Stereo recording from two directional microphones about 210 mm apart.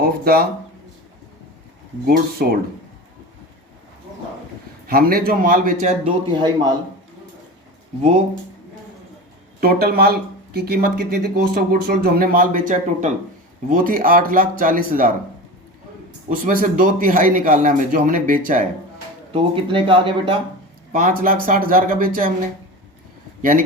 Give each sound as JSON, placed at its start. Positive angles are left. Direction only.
{"t": 0.0, "sound": "speech", "side_deg": -45}
{"t": 2.0, "sound": "speech", "side_deg": -45}
{"t": 4.9, "sound": "speech", "side_deg": -45}
{"t": 6.3, "sound": "speech", "side_deg": -20}
{"t": 9.6, "sound": "a man's voice", "side_deg": -45}
{"t": 16.3, "sound": "a man's voice", "side_deg": -40}
{"t": 19.3, "sound": "speech", "side_deg": -25}
{"t": 20.9, "sound": "a man's voice", "side_deg": -40}
{"t": 23.4, "sound": "a man's voice", "side_deg": -40}